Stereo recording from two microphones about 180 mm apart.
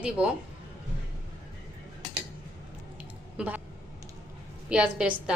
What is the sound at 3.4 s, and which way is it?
Speech, 10° right (ahead or behind).